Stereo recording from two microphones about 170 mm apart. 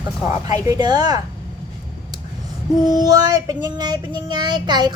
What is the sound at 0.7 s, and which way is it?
Child singing, 25° right (ahead or behind).